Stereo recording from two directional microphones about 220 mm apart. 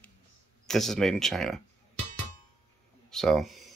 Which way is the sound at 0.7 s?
Centre (ahead or behind).